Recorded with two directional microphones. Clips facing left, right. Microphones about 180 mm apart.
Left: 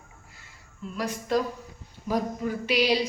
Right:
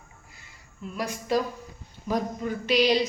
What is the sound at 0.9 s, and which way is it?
Speech, 5° right (ahead or behind).